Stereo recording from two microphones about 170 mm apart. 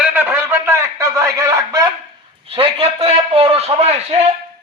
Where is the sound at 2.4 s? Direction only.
35° right (ahead or behind).